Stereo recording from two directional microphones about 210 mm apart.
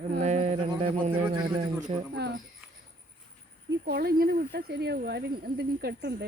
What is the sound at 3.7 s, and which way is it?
Speech, 50° right (ahead or behind).